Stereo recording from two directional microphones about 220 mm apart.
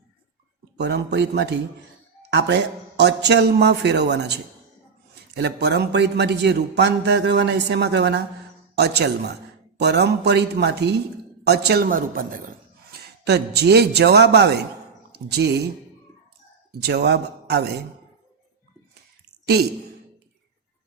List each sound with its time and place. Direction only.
0.8 s a man's voice: 50° right (ahead or behind)
3.0 s a man's voice: 50° right (ahead or behind)
12.9 s a man's voice: 50° right (ahead or behind)
16.8 s a man's voice: 50° right (ahead or behind)